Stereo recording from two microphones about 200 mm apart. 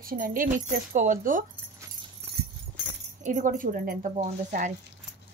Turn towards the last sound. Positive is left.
turn(degrees=-40)  # may be behind; listen again after turning